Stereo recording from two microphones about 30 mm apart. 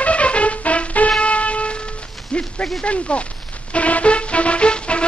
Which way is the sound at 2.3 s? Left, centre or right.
Left.